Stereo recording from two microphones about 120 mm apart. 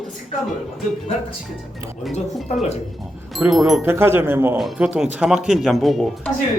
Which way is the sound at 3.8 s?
20° right (ahead or behind).